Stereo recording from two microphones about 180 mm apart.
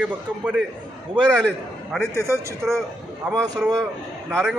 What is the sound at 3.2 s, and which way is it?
Speech, 20° right (ahead or behind).